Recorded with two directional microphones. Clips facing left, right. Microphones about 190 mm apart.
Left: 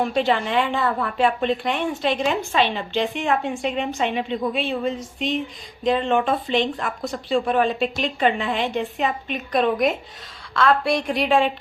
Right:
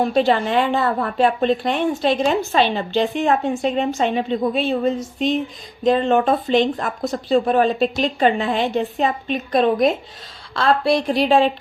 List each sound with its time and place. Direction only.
0.0 s speech: 40° right (ahead or behind)